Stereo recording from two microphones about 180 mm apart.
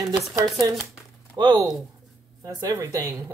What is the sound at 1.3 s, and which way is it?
Speech, 25° right (ahead or behind).